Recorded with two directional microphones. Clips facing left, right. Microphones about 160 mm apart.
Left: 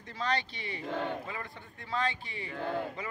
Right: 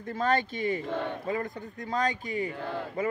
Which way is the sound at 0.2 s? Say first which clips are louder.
Right 6 dB; 50° right (ahead or behind).